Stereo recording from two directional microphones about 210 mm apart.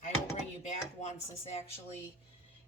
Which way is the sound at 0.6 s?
30° left (ahead or behind).